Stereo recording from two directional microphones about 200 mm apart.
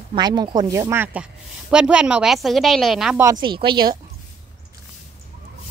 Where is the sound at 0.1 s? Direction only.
20° right (ahead or behind); by 3.2 s centre (ahead or behind).